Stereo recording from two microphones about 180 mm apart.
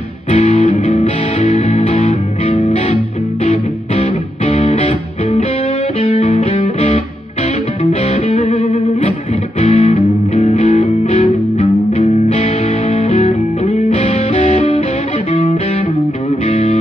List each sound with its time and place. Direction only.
0.3 s music: 40° left (ahead or behind)
5.9 s music: 35° left (ahead or behind)
7.8 s music: 40° left (ahead or behind)
16.4 s music: 40° left (ahead or behind)